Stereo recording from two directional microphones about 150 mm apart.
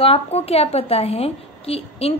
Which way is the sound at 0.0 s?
40° left (ahead or behind).